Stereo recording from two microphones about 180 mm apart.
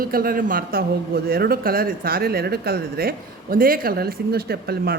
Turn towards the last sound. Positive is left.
turn(degrees=-60)  # may be behind; listen again after turning